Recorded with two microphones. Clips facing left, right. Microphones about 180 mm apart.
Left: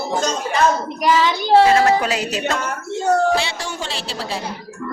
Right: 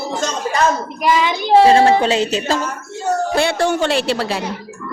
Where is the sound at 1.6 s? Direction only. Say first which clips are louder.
Right 5 dB; 30° right (ahead or behind).